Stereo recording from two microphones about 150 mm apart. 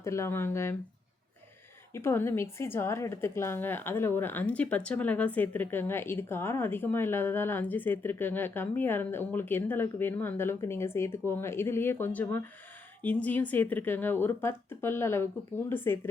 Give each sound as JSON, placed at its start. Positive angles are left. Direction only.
{"t": 0.0, "sound": "a woman's voice", "side_deg": 20}
{"t": 1.9, "sound": "a woman's voice", "side_deg": 15}